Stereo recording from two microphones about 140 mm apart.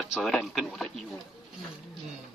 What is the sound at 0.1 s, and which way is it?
A man's voice, centre (ahead or behind).